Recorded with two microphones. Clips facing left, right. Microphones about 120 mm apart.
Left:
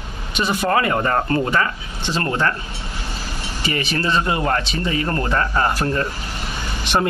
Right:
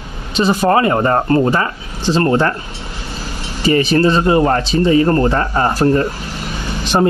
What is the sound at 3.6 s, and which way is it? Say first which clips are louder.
Speech: right 11 dB; 35° right (ahead or behind).